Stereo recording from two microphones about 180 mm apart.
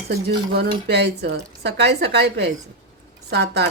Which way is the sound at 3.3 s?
65° right (ahead or behind).